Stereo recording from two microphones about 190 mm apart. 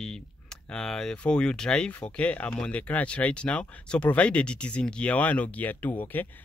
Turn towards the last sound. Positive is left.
turn(degrees=10)  # may be behind; listen again after turning